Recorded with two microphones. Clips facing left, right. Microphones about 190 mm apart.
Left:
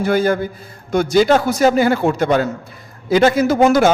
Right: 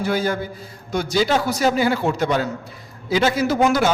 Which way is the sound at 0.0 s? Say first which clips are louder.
Left 6 dB; 55° left (ahead or behind).